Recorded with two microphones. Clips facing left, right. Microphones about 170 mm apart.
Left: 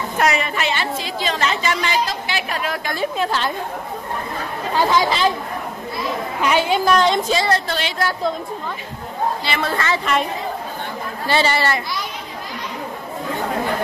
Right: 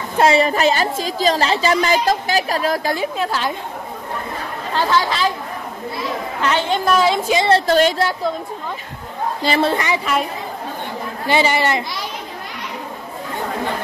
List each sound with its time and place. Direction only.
0.2 s a woman's voice: 30° right (ahead or behind)
3.2 s speech: 5° right (ahead or behind)
4.7 s a woman's voice: 15° left (ahead or behind)
6.4 s a woman's voice: 10° left (ahead or behind)
6.8 s a woman's voice: 5° right (ahead or behind)
7.3 s a woman's voice: 25° right (ahead or behind)
7.6 s a woman's voice: 45° right (ahead or behind)
9.4 s a woman's voice: 40° right (ahead or behind)
9.7 s speech: 15° right (ahead or behind)
11.2 s speech: 15° right (ahead or behind)